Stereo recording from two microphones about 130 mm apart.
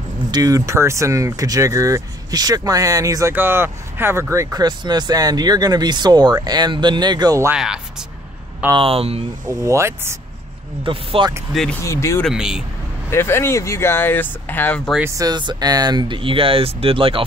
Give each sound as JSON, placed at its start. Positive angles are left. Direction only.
{"t": 0.3, "sound": "speech", "side_deg": -30}
{"t": 7.5, "sound": "speech", "side_deg": -5}
{"t": 8.7, "sound": "speech", "side_deg": -45}
{"t": 9.5, "sound": "speech", "side_deg": -20}
{"t": 10.9, "sound": "speech", "side_deg": -40}
{"t": 11.8, "sound": "speech", "side_deg": 20}
{"t": 12.3, "sound": "speech", "side_deg": -5}
{"t": 13.1, "sound": "speech", "side_deg": 20}
{"t": 15.0, "sound": "speech", "side_deg": -30}